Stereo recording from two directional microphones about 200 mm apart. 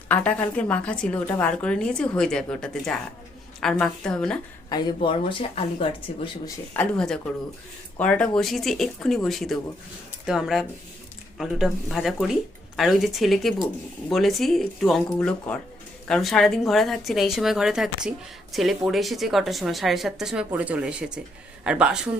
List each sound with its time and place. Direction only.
0.1 s a woman's voice: 5° left (ahead or behind)
4.7 s speech: 25° left (ahead or behind)
6.7 s a woman's voice: 5° left (ahead or behind)